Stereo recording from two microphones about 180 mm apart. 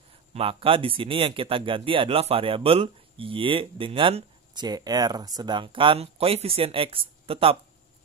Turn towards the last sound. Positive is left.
turn(degrees=-30)  # may be behind; listen again after turning